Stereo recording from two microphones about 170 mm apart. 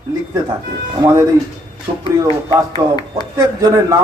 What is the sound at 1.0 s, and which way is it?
Speech, 20° right (ahead or behind).